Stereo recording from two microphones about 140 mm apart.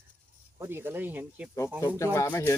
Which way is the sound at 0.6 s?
15° right (ahead or behind).